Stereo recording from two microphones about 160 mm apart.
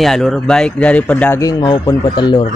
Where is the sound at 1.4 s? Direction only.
25° left (ahead or behind).